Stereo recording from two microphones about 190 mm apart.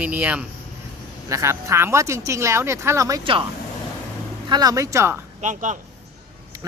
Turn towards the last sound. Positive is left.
turn(degrees=-40)  # may be behind; listen again after turning